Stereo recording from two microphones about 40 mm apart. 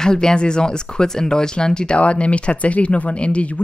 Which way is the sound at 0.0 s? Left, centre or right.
Centre.